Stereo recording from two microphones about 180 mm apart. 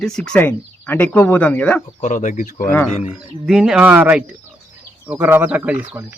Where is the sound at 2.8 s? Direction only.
5° right (ahead or behind).